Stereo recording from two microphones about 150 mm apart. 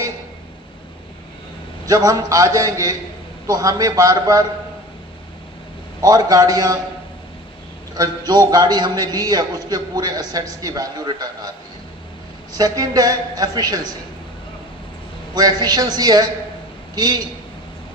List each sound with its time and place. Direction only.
1.9 s a man's voice: 25° right (ahead or behind)
6.0 s a man's voice: 25° right (ahead or behind)
7.9 s a man's voice: 25° right (ahead or behind)
12.5 s a man's voice: 25° right (ahead or behind)
15.4 s a man's voice: 25° right (ahead or behind)